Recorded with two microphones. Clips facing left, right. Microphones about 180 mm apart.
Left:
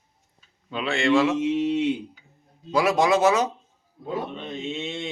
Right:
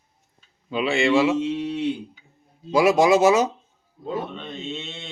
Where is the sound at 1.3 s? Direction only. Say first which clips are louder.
Left 2 dB; 15° left (ahead or behind).